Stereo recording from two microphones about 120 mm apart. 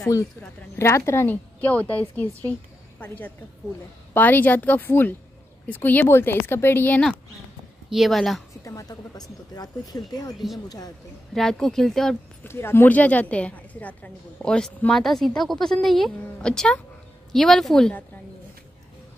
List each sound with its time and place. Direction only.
0.7 s a woman's voice: 20° left (ahead or behind)
7.9 s speech: centre (ahead or behind)
8.6 s speech: 30° left (ahead or behind)
11.3 s speech: 5° left (ahead or behind)
12.4 s a woman's voice: 20° left (ahead or behind); by 17.9 s 5° left (ahead or behind)